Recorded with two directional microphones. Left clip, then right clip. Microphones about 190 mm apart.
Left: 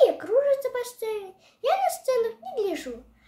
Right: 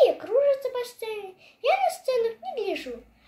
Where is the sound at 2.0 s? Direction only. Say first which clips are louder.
Even; 15° left (ahead or behind).